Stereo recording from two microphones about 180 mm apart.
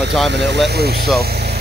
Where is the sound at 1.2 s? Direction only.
65° right (ahead or behind).